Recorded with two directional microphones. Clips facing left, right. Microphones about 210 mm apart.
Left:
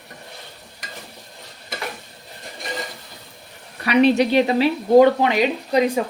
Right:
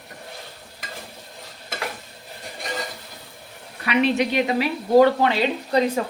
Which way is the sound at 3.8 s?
40° left (ahead or behind).